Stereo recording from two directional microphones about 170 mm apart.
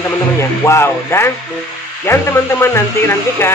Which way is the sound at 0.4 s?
15° left (ahead or behind).